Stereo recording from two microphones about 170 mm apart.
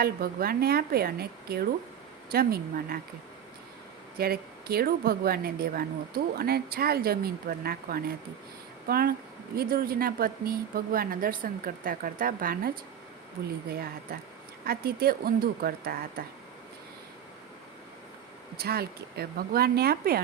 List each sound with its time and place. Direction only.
0.0 s a woman's voice: 60° right (ahead or behind)
4.2 s a woman's voice: 65° right (ahead or behind)
14.1 s a woman's voice: 65° right (ahead or behind)
18.5 s speech: 65° right (ahead or behind)